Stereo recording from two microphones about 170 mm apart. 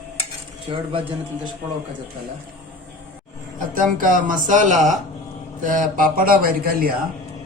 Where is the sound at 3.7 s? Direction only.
50° right (ahead or behind).